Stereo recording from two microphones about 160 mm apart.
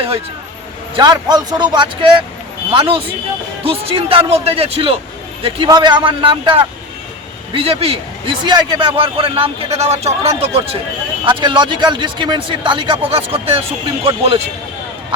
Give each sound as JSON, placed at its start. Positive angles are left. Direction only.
{"t": 0.9, "sound": "a man's voice", "side_deg": -25}
{"t": 11.3, "sound": "a man's voice", "side_deg": -30}